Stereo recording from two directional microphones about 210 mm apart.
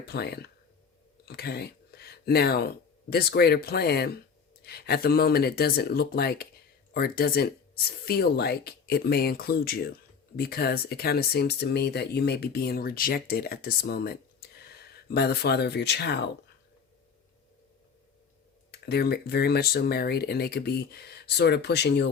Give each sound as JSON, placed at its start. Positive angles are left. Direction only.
{"t": 0.0, "sound": "speech", "side_deg": 50}
{"t": 18.7, "sound": "speech", "side_deg": 50}